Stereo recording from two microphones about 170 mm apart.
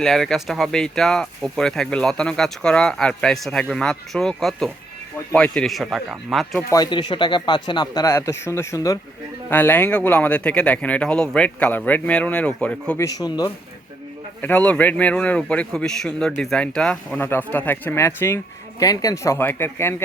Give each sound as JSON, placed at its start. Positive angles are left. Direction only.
{"t": 0.0, "sound": "speech", "side_deg": 0}
{"t": 6.7, "sound": "speech", "side_deg": 25}
{"t": 13.1, "sound": "speech", "side_deg": 20}
{"t": 14.4, "sound": "speech", "side_deg": 10}